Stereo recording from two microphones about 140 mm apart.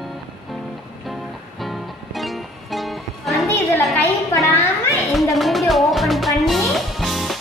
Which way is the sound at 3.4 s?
20° left (ahead or behind).